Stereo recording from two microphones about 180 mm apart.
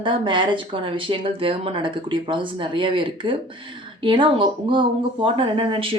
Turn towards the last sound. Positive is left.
turn(degrees=-30)  # may be behind; listen again after turning